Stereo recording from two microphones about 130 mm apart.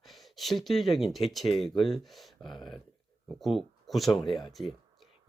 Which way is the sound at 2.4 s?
35° left (ahead or behind).